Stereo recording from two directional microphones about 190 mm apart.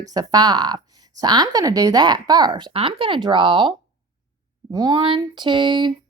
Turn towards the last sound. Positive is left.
turn(degrees=-25)  # may be behind; listen again after turning